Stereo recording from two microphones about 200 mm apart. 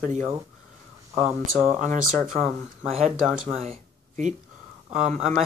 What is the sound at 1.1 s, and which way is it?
Speech, centre (ahead or behind).